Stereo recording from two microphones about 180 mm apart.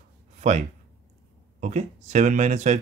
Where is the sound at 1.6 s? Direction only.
40° right (ahead or behind).